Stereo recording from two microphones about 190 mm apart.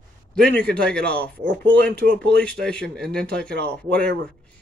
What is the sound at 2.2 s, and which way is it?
Speech, 5° left (ahead or behind).